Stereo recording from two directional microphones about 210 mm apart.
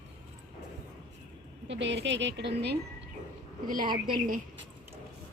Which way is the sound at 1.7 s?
55° right (ahead or behind).